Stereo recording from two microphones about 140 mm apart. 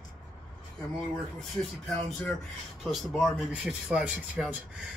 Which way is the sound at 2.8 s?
Centre (ahead or behind).